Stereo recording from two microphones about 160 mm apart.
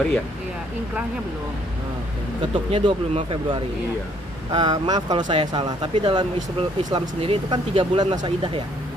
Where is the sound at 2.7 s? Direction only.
35° right (ahead or behind).